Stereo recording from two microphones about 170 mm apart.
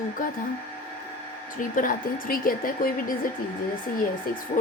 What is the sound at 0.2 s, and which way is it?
Speech, 50° left (ahead or behind).